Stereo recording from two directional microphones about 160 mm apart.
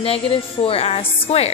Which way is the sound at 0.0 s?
35° left (ahead or behind).